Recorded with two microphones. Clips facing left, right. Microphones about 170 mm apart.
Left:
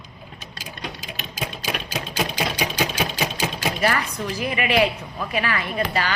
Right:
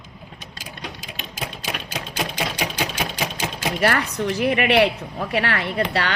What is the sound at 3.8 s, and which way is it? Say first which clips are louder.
A woman's voice: right 3 dB; 70° right (ahead or behind).